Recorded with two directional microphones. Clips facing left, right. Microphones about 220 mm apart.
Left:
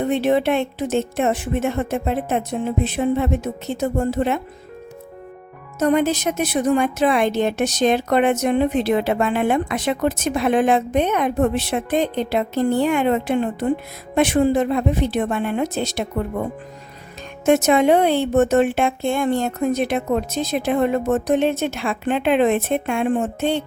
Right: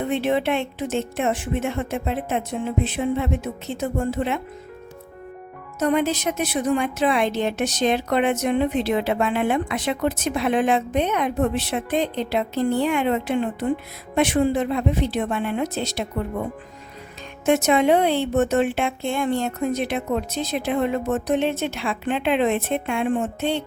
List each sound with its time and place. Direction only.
0.1 s speech: 40° left (ahead or behind)
5.8 s a woman's voice: 45° left (ahead or behind)
17.4 s a woman's voice: 45° left (ahead or behind)